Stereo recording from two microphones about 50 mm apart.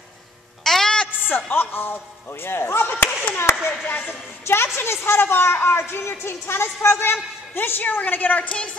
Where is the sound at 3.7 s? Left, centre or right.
Left.